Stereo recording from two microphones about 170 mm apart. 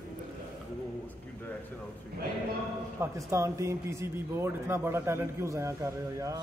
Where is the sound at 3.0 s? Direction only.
15° right (ahead or behind).